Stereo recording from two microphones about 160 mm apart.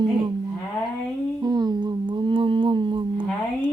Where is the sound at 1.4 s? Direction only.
25° right (ahead or behind).